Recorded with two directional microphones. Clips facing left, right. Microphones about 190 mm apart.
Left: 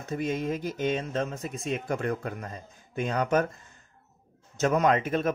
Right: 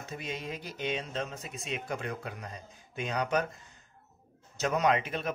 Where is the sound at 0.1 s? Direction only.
50° left (ahead or behind).